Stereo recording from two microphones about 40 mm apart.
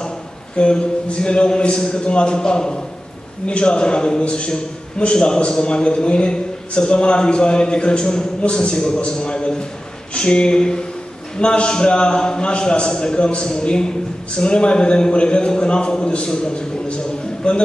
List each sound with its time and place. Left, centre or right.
0.6 s a man's voice: left